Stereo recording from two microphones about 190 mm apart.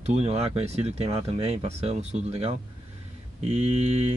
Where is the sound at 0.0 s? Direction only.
35° right (ahead or behind).